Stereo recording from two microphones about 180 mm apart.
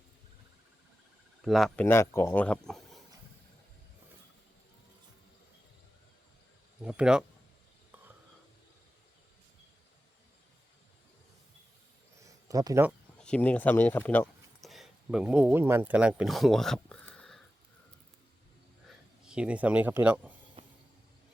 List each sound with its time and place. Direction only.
1.4 s speech: centre (ahead or behind)
1.8 s speech: 15° left (ahead or behind)
6.8 s speech: 5° right (ahead or behind)
12.2 s a sound: 20° right (ahead or behind)
13.1 s speech: 5° left (ahead or behind)
14.6 s speech: centre (ahead or behind)
18.9 s speech: 5° right (ahead or behind)
20.6 s train: 30° right (ahead or behind)